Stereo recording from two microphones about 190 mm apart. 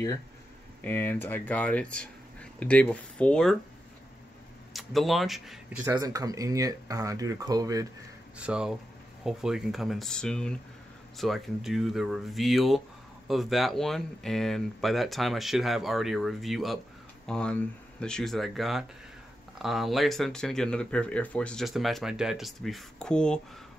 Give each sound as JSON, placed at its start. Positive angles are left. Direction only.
{"t": 0.8, "sound": "speech", "side_deg": 10}
{"t": 4.7, "sound": "speech", "side_deg": 0}
{"t": 5.9, "sound": "speech", "side_deg": -20}
{"t": 8.4, "sound": "speech", "side_deg": -5}